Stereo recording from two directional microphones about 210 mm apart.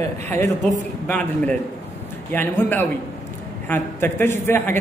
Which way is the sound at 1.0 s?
5° left (ahead or behind).